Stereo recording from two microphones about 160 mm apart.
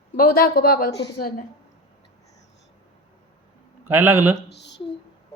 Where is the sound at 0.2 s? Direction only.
65° left (ahead or behind).